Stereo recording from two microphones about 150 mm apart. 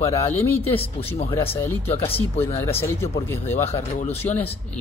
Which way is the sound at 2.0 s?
40° left (ahead or behind).